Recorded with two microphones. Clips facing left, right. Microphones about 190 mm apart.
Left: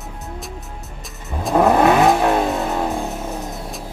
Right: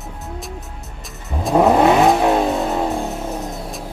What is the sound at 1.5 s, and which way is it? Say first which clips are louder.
Vehicle: right 1 dB; 15° right (ahead or behind).